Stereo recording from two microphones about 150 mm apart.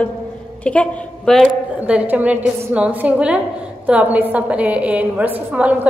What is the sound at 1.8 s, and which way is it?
A woman's voice, 10° right (ahead or behind).